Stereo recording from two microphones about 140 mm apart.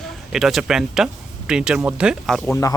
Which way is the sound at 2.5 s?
25° left (ahead or behind).